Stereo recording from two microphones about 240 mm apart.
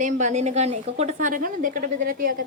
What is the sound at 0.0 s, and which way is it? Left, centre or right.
A woman's voice, right.